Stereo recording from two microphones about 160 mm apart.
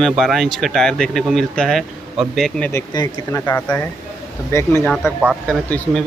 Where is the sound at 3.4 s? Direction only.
10° left (ahead or behind).